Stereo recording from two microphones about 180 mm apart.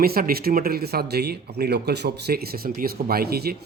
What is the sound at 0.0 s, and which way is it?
Speech, 55° right (ahead or behind).